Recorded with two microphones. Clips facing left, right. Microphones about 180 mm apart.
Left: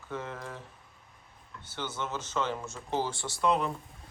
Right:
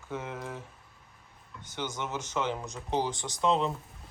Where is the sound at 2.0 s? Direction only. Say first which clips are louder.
Left 1 dB; 15° right (ahead or behind).